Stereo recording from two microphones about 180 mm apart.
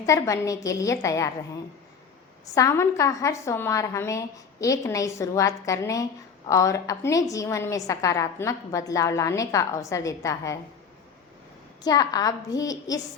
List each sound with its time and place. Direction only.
0.0 s a woman's voice: 20° left (ahead or behind)
2.6 s a woman's voice: 15° left (ahead or behind)
11.8 s a woman's voice: 20° left (ahead or behind)